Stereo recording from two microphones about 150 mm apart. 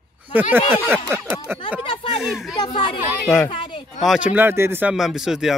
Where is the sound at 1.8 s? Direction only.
35° left (ahead or behind).